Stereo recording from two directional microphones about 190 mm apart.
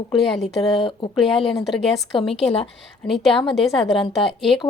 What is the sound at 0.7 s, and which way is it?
Speech, 25° left (ahead or behind).